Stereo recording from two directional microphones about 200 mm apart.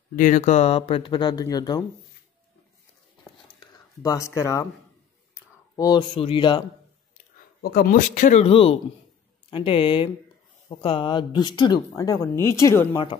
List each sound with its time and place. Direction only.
0.1 s speech: 40° left (ahead or behind); by 1.9 s 20° left (ahead or behind)
3.5 s speech: 20° left (ahead or behind)
5.3 s a sound: 20° left (ahead or behind)
6.1 s speech: 25° left (ahead or behind)
7.6 s speech: 45° left (ahead or behind); by 13.2 s 20° left (ahead or behind)